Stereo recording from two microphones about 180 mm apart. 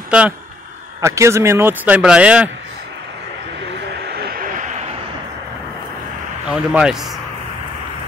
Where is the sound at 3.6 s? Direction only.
70° right (ahead or behind); by 4.9 s 40° right (ahead or behind).